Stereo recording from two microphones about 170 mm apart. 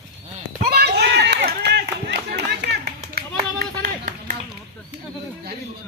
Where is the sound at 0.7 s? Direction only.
75° right (ahead or behind); by 4.3 s 50° right (ahead or behind).